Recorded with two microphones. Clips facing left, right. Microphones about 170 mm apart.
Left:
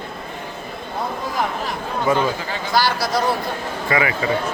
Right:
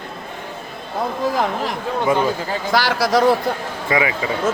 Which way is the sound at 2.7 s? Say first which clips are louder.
Right 2 dB; 90° right.